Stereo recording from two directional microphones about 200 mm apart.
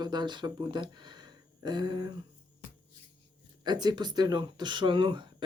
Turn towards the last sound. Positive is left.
turn(degrees=-25)  # may be behind; listen again after turning